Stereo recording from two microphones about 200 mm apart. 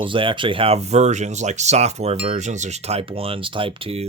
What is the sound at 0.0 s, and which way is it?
Speech, 25° right (ahead or behind).